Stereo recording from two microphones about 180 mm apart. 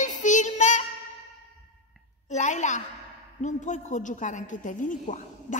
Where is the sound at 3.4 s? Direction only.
40° left (ahead or behind).